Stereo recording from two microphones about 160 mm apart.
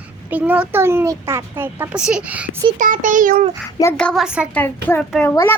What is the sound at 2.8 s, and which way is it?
Speech, 55° right (ahead or behind).